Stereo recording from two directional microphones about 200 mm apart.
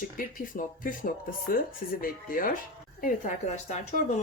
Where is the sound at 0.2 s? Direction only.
45° left (ahead or behind).